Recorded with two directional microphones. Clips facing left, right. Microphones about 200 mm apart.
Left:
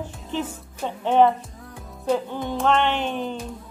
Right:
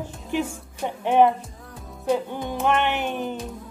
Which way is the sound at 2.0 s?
15° right (ahead or behind).